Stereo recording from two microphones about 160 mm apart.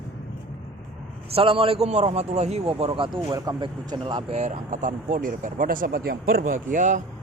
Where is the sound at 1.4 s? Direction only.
35° right (ahead or behind).